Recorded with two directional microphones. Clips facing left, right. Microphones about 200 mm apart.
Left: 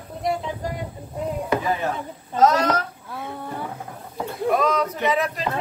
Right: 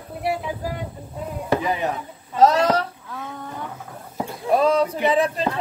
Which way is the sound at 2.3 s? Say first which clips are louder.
Right 2 dB; 30° right (ahead or behind).